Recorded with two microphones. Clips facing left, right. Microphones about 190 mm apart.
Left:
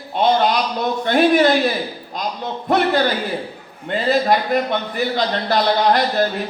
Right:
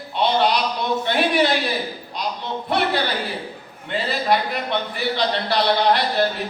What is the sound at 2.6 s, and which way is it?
A man's voice, 45° left (ahead or behind).